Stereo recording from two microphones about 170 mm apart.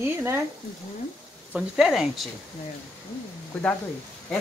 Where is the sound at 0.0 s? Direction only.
15° right (ahead or behind).